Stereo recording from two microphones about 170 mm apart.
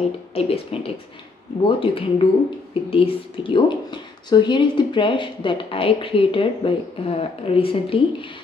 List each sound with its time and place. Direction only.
0.3 s speech: 35° left (ahead or behind)